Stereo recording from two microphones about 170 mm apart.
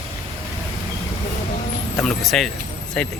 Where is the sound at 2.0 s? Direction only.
Centre (ahead or behind).